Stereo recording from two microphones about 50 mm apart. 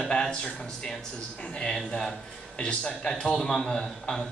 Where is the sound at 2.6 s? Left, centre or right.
Left.